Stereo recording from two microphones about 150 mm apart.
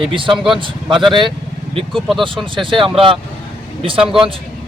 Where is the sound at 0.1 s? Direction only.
35° right (ahead or behind).